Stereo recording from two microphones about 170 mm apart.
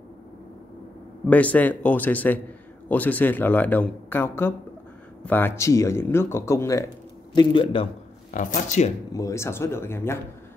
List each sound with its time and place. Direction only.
1.2 s speech: 10° left (ahead or behind)
7.3 s a man's voice: 30° left (ahead or behind)
8.5 s speech: 45° left (ahead or behind)
9.1 s speech: 20° left (ahead or behind)